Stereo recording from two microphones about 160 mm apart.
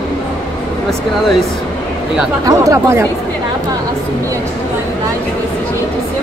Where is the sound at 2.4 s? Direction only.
20° right (ahead or behind).